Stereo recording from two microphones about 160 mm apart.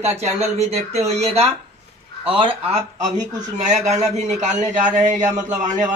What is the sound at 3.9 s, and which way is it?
Speech, 45° right (ahead or behind).